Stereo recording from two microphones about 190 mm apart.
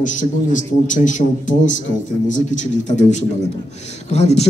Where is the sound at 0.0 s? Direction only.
40° left (ahead or behind).